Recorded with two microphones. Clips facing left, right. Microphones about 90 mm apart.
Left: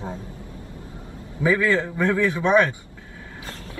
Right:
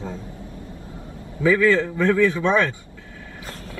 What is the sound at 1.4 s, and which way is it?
A man's voice, 20° left (ahead or behind).